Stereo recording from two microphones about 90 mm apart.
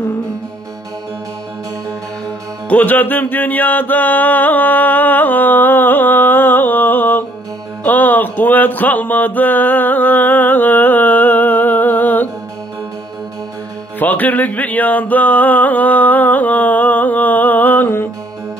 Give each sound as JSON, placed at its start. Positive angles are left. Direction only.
{"t": 2.7, "sound": "music", "side_deg": 20}
{"t": 7.8, "sound": "mantra", "side_deg": 20}
{"t": 13.9, "sound": "music", "side_deg": 20}